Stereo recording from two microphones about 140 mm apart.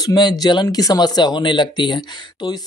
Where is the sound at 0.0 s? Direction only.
30° left (ahead or behind).